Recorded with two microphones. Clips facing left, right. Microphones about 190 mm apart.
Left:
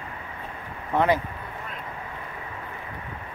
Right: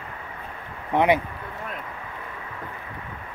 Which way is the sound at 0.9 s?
15° right (ahead or behind).